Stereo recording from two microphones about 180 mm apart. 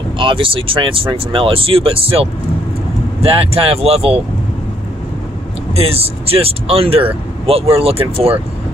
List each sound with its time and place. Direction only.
0.2 s speech: 30° right (ahead or behind)
5.8 s speech: 35° right (ahead or behind)